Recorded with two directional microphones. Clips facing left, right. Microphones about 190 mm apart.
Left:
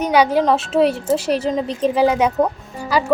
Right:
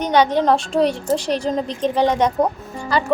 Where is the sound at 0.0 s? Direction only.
10° left (ahead or behind).